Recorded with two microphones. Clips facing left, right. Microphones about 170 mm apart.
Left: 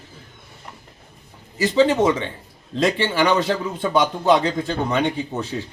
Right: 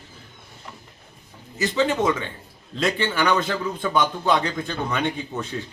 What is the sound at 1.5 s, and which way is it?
Speech, 30° left (ahead or behind).